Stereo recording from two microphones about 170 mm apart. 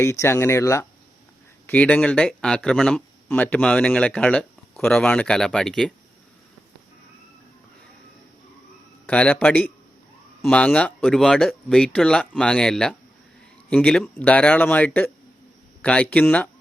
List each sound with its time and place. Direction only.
0.0 s speech: 15° left (ahead or behind)
9.0 s speech: 5° left (ahead or behind)